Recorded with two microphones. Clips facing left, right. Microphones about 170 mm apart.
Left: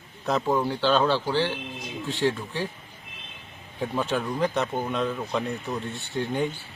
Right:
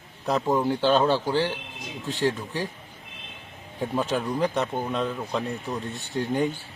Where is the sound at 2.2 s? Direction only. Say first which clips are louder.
Even; 40° right (ahead or behind).